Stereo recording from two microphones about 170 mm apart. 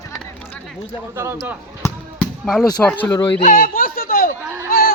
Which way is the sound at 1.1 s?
15° right (ahead or behind).